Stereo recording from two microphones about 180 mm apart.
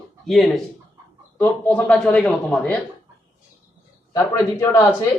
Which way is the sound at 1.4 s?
10° left (ahead or behind).